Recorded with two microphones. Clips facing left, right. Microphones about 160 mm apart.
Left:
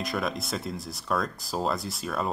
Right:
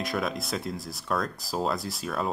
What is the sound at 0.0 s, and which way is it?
Speech, centre (ahead or behind).